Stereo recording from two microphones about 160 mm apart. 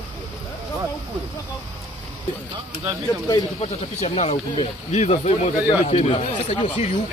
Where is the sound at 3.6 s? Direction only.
40° left (ahead or behind).